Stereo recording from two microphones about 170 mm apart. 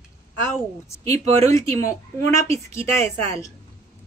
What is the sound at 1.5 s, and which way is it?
A woman's voice, 20° left (ahead or behind).